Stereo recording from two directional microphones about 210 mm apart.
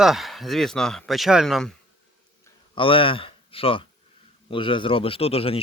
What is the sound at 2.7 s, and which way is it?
A man's voice, 25° left (ahead or behind).